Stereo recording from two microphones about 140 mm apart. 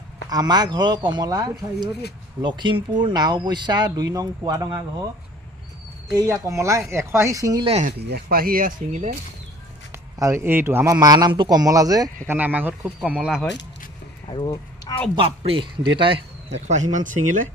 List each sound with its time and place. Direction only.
0.3 s speech: 30° right (ahead or behind)
6.1 s speech: 20° right (ahead or behind)
7.6 s speech: 45° right (ahead or behind)
7.9 s speech: 90° right; by 9.1 s 70° right (ahead or behind)
9.9 s speech: 20° right (ahead or behind)
10.9 s speech: 30° right (ahead or behind)
12.3 s speech: 10° right (ahead or behind)
14.3 s speech: 30° left (ahead or behind)
15.1 s speech: 40° right (ahead or behind); by 17.4 s 65° right (ahead or behind)